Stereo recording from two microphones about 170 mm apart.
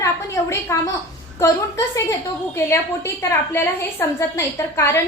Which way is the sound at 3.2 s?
15° left (ahead or behind).